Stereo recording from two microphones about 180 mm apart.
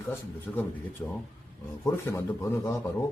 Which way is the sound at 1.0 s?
10° left (ahead or behind).